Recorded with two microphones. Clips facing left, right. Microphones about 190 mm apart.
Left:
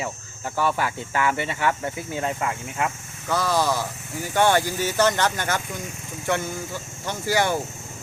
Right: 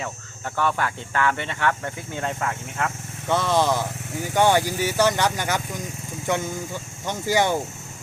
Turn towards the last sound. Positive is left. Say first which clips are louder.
# right 1 dB
turn(degrees=-20)  # may be behind; listen again after turning